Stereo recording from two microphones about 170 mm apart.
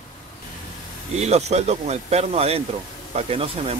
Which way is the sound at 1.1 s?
40° right (ahead or behind).